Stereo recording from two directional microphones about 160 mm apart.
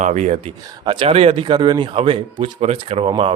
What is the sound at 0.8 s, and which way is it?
Speech, 30° right (ahead or behind).